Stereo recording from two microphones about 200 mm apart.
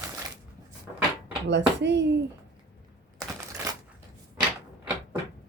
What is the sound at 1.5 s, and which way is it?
Speech, 60° right (ahead or behind).